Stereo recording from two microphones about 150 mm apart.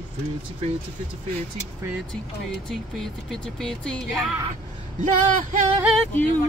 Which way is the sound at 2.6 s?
5° left (ahead or behind).